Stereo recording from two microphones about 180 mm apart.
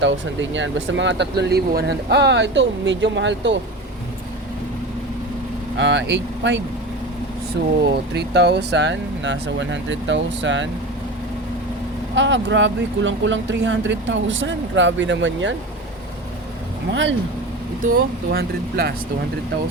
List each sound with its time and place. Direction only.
0.0 s speech: 90° right
5.7 s speech: 85° right
7.9 s speech: 65° right (ahead or behind); by 10.7 s 90° right
12.1 s speech: 90° right
16.9 s speech: 90° right
17.8 s speech: 55° right (ahead or behind)